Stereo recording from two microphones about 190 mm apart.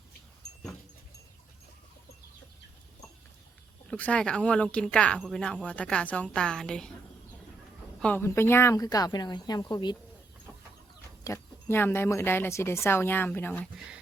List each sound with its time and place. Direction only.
3.8 s speech: 5° left (ahead or behind)
8.0 s speech: 10° left (ahead or behind)
11.2 s speech: 15° left (ahead or behind)
13.7 s speech: 5° right (ahead or behind)